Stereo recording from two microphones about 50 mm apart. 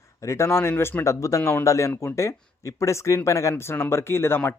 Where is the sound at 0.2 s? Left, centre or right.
Left.